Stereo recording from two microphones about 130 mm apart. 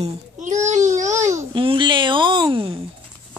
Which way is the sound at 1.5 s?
40° right (ahead or behind).